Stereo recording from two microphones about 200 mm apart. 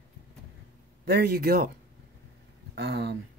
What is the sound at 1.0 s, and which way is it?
Speech, 50° right (ahead or behind).